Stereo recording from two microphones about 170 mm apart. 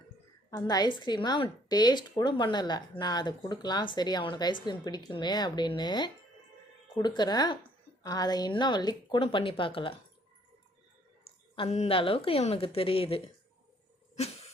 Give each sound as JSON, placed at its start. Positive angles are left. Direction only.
{"t": 0.5, "sound": "a woman's voice", "side_deg": 25}
{"t": 11.5, "sound": "a woman's voice", "side_deg": 35}